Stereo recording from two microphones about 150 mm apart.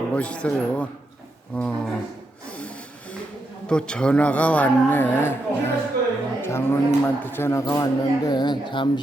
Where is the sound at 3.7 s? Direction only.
5° left (ahead or behind).